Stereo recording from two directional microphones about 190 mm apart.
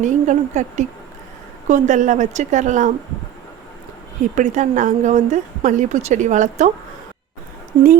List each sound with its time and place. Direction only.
0.0 s a woman's voice: 40° right (ahead or behind)
4.4 s a woman's voice: 40° right (ahead or behind)